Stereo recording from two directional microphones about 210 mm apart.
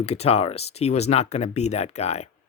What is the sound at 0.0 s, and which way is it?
Speech, 30° left (ahead or behind).